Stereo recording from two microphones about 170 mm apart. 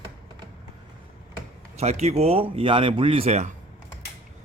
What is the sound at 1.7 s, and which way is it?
Speech, 40° right (ahead or behind).